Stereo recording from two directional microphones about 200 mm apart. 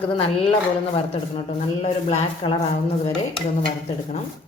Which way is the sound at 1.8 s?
30° left (ahead or behind).